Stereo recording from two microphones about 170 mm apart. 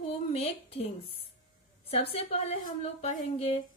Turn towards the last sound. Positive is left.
turn(degrees=40)  # may be behind; listen again after turning